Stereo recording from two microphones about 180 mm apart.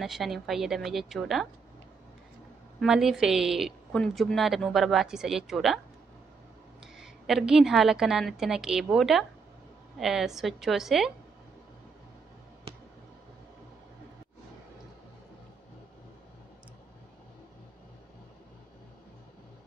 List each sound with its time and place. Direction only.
0.0 s a woman's voice: centre (ahead or behind)
2.8 s a woman's voice: centre (ahead or behind)
7.0 s a woman's voice: centre (ahead or behind)